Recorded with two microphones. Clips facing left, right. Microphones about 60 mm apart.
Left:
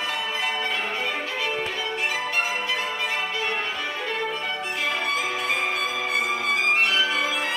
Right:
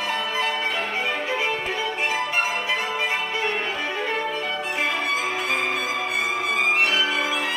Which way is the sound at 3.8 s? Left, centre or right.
Right.